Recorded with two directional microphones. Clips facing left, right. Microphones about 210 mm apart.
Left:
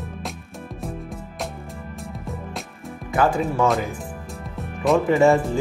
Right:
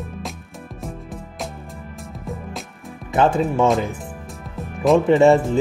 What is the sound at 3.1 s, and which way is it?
Speech, 25° right (ahead or behind).